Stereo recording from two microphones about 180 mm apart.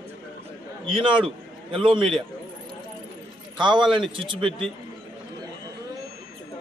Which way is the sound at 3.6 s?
25° right (ahead or behind).